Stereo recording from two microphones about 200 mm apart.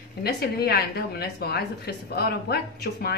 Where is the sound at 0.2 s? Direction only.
50° left (ahead or behind).